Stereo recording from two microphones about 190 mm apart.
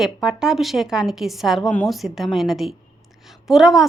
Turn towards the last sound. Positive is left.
turn(degrees=0)  # may be behind; listen again after turning